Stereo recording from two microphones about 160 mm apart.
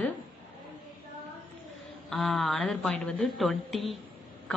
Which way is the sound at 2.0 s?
Centre (ahead or behind).